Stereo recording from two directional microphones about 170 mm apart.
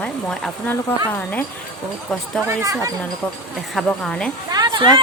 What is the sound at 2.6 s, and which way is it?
Speech, 20° right (ahead or behind).